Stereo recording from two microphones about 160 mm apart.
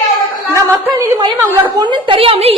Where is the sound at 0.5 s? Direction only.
20° right (ahead or behind).